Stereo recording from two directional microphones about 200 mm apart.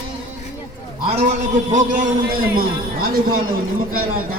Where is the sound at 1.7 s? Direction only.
40° right (ahead or behind).